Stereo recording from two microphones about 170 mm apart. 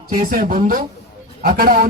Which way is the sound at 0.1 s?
55° right (ahead or behind).